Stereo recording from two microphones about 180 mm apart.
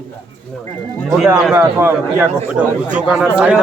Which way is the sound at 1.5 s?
10° right (ahead or behind).